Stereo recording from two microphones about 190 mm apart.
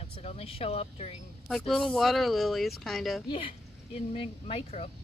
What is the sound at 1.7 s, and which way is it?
Speech, centre (ahead or behind).